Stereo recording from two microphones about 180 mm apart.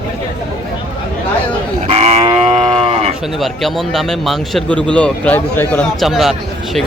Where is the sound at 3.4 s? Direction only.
Centre (ahead or behind).